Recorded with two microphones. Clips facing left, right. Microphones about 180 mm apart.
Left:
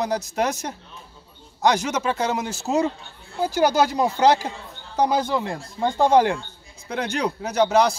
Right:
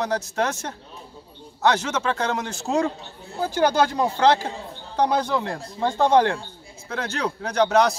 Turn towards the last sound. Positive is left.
turn(degrees=0)  # may be behind; listen again after turning